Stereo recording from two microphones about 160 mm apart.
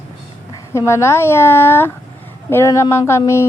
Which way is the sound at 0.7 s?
15° left (ahead or behind).